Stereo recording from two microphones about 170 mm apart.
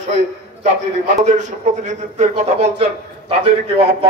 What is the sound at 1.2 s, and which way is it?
A man's voice, 45° right (ahead or behind).